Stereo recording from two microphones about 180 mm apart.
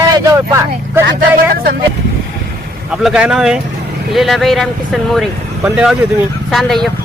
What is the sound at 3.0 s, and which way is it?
Speech, 5° right (ahead or behind).